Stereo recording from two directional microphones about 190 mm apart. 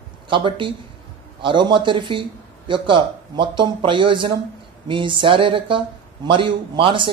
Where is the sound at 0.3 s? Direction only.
25° right (ahead or behind).